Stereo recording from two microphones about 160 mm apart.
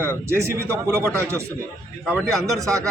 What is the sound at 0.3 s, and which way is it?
A man's voice, 15° right (ahead or behind).